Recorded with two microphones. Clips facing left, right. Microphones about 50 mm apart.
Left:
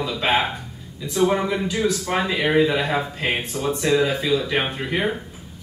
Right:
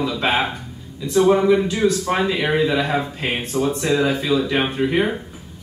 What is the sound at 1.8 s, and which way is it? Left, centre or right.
Speech, right.